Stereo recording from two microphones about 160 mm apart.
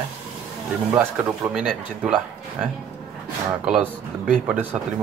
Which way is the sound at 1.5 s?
5° right (ahead or behind).